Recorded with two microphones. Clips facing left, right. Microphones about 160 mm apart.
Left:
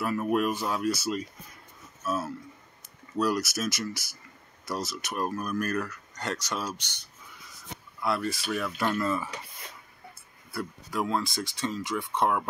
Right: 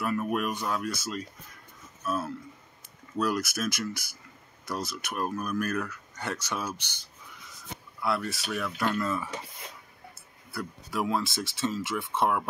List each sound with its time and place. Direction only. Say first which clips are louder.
0.0 s speech: left 2 dB; centre (ahead or behind)
6.8 s speech: even; 70° left (ahead or behind)
8.0 s speech: left 1 dB; centre (ahead or behind)
10.5 s speech: left 1 dB; centre (ahead or behind)